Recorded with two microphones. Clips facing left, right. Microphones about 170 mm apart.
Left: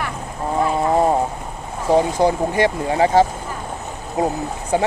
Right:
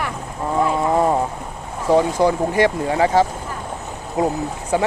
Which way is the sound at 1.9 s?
20° left (ahead or behind).